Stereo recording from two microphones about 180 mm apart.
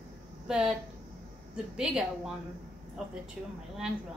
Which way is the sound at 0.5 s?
5° right (ahead or behind).